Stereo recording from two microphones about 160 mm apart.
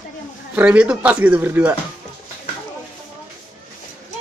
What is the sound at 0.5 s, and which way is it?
Speech, 10° right (ahead or behind).